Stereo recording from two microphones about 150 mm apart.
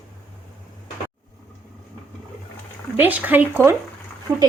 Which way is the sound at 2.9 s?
10° right (ahead or behind).